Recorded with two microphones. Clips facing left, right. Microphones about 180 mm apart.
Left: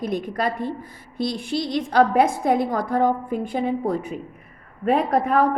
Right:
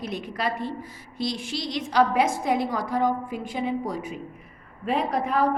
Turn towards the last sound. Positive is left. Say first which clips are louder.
# left 5 dB
turn(degrees=55)  # may be behind; listen again after turning